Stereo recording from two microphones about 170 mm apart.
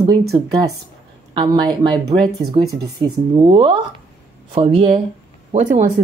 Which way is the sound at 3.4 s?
30° right (ahead or behind).